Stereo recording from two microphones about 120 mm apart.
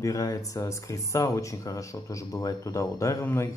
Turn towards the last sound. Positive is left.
turn(degrees=20)  # may be behind; listen again after turning